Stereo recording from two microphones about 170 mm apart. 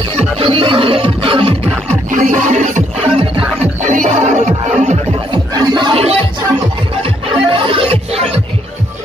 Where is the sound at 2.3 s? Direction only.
45° right (ahead or behind).